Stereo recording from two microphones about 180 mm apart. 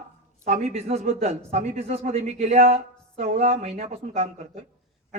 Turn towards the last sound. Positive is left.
turn(degrees=-35)  # may be behind; listen again after turning